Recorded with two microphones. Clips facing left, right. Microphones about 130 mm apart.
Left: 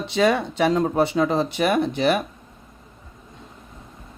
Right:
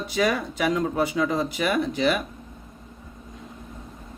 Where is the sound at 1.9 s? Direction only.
60° left (ahead or behind).